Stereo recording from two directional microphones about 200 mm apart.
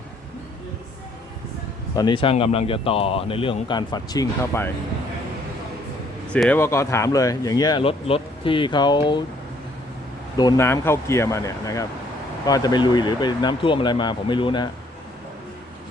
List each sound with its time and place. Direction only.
2.0 s speech: 25° left (ahead or behind)
6.3 s speech: 5° left (ahead or behind); by 9.2 s 25° left (ahead or behind)
10.3 s speech: 15° left (ahead or behind)